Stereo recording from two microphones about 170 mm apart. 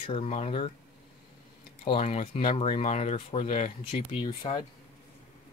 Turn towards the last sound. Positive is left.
turn(degrees=35)  # may be behind; listen again after turning